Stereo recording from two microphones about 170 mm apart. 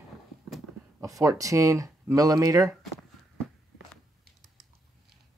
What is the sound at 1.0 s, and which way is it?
Speech, 20° right (ahead or behind).